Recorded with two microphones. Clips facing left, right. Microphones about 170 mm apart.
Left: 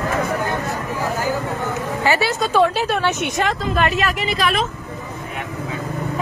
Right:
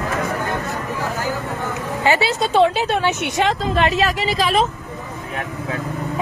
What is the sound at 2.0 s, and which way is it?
A woman's voice, 20° right (ahead or behind).